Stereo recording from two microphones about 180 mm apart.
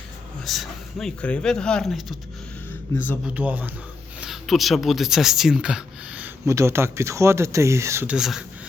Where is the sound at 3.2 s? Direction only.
10° right (ahead or behind).